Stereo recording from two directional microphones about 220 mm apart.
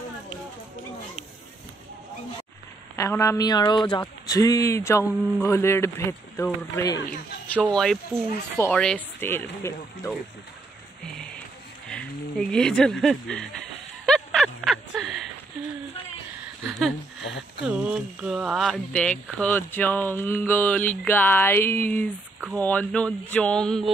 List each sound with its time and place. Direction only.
3.0 s speech: 15° left (ahead or behind)
11.1 s music: centre (ahead or behind)
11.9 s speech: 5° left (ahead or behind)
14.0 s a sound: centre (ahead or behind)
16.6 s a sound: centre (ahead or behind)
17.2 s speech: 55° left (ahead or behind)
17.6 s speech: 5° right (ahead or behind)